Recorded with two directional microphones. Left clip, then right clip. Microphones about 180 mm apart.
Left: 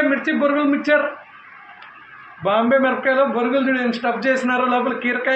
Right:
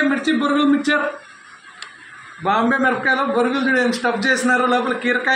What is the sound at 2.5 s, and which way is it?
A man's voice, 25° left (ahead or behind).